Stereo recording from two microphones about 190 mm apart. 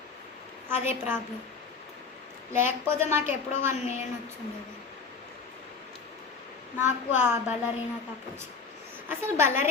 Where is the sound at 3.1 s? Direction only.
10° right (ahead or behind).